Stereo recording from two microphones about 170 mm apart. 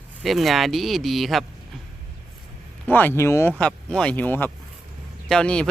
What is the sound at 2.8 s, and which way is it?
Speech, 10° left (ahead or behind).